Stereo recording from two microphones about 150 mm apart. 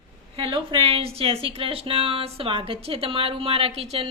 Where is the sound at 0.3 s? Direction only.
35° right (ahead or behind).